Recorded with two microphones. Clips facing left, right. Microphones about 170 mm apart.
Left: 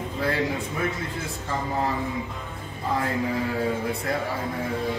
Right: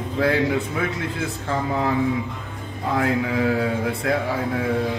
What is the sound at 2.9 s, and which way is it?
A man's voice, 80° right.